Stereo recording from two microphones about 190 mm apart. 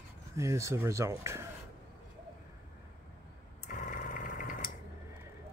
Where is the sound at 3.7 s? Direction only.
45° left (ahead or behind).